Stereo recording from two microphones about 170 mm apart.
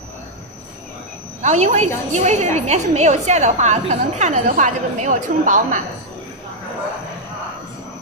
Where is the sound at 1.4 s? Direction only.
45° right (ahead or behind).